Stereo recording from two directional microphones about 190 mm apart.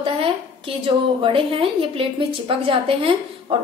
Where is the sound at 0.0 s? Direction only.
30° right (ahead or behind).